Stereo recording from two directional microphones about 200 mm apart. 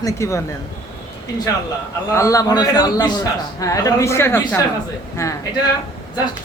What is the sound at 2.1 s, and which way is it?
A man's voice, 15° left (ahead or behind).